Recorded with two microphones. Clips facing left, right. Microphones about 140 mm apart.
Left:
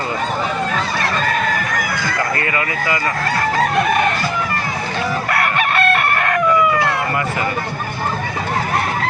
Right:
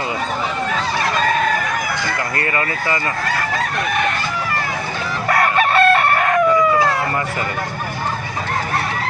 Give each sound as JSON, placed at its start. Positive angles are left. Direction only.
{"t": 5.4, "sound": "chicken", "side_deg": -35}